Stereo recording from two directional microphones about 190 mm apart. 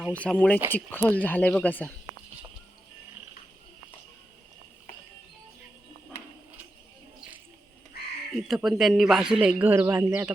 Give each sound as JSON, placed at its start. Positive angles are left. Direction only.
{"t": 0.1, "sound": "speech", "side_deg": 5}
{"t": 7.9, "sound": "a sound", "side_deg": 55}
{"t": 8.4, "sound": "speech", "side_deg": 0}